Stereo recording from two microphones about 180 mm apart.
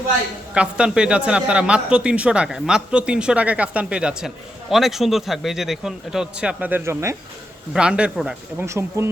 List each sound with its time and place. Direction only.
0.5 s a man's voice: 5° right (ahead or behind)
7.7 s a man's voice: 5° right (ahead or behind)
8.6 s speech: 15° right (ahead or behind)